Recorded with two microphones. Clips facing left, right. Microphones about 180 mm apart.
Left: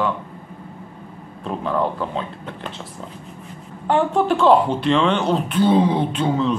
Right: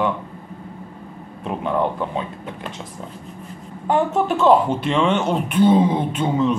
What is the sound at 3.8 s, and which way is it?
Speech, 5° right (ahead or behind).